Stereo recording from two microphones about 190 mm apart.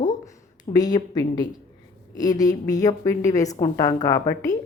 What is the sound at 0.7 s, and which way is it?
A woman's voice, 20° left (ahead or behind).